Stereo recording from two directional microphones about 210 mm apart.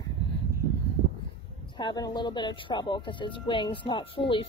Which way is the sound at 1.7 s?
20° left (ahead or behind).